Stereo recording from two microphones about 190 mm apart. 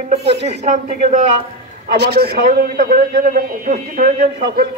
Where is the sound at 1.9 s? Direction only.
60° right (ahead or behind); by 4.3 s 40° right (ahead or behind).